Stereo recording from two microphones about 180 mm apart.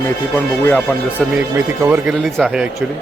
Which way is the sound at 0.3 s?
10° left (ahead or behind).